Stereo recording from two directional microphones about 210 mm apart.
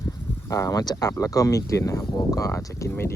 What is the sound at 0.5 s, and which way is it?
Speech, 15° left (ahead or behind).